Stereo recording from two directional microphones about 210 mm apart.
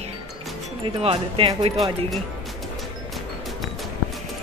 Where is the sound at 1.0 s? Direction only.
25° right (ahead or behind).